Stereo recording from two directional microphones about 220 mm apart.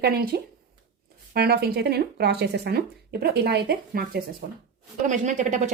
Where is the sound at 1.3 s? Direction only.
45° right (ahead or behind).